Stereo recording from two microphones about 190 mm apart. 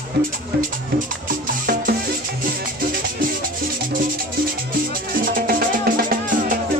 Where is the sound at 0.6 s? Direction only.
45° right (ahead or behind).